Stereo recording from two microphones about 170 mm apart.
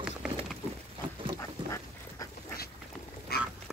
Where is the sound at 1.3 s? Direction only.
15° left (ahead or behind).